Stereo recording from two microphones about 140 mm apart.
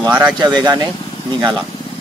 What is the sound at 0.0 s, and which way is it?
Speech, 15° right (ahead or behind).